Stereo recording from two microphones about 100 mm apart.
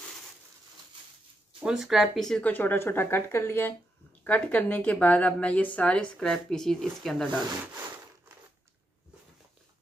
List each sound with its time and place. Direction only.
1.6 s speech: 5° right (ahead or behind)
2.5 s a woman's voice: 20° left (ahead or behind); by 7.2 s 5° left (ahead or behind)